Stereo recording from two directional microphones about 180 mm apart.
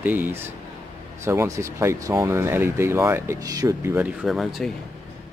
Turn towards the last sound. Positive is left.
turn(degrees=0)  # may be behind; listen again after turning